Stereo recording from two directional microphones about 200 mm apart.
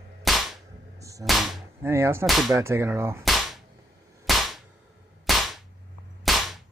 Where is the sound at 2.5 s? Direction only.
15° right (ahead or behind).